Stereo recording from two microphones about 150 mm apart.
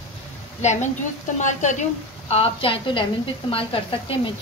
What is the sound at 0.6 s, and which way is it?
A woman's voice, 50° left (ahead or behind).